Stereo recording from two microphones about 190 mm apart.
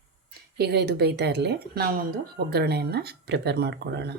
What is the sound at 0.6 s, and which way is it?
Speech, 60° right (ahead or behind).